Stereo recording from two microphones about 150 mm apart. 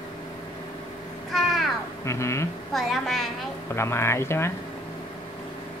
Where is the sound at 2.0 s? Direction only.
20° left (ahead or behind).